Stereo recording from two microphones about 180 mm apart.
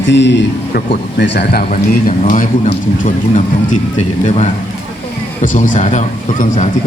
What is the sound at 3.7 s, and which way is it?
A man's voice, 40° left (ahead or behind).